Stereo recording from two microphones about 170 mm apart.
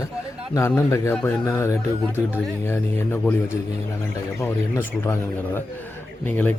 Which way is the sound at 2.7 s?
15° left (ahead or behind).